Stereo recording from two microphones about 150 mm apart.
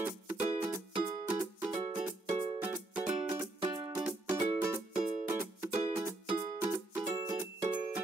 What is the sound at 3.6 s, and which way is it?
Music, 35° right (ahead or behind).